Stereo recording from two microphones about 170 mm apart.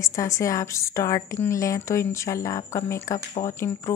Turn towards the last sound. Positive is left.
turn(degrees=20)  # may be behind; listen again after turning